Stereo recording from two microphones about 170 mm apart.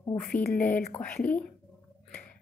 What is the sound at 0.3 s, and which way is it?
Speech, 60° left (ahead or behind).